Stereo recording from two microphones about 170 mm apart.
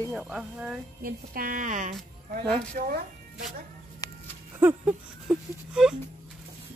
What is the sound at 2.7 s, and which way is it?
Speech, 60° right (ahead or behind).